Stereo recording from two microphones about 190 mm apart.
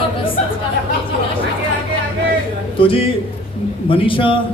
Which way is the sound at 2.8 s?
30° left (ahead or behind).